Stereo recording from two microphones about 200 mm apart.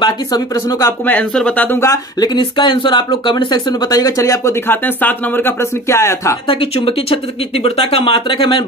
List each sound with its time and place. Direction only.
0.0 s speech: 20° left (ahead or behind)
6.4 s speech: 25° left (ahead or behind)